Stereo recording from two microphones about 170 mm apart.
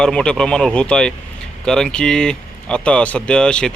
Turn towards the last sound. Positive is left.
turn(degrees=5)  # may be behind; listen again after turning